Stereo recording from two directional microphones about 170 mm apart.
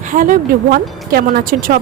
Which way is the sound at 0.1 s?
50° right (ahead or behind).